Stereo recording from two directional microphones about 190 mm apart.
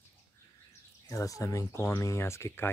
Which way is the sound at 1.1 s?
15° left (ahead or behind).